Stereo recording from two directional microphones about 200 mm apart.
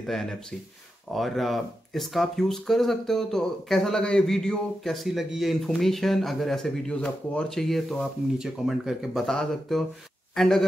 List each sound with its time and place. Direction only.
0.0 s speech: centre (ahead or behind)